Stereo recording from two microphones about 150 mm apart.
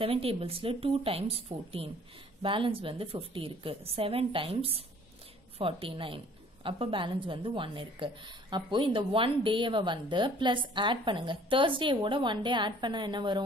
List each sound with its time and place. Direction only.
0.0 s a woman's voice: 40° right (ahead or behind)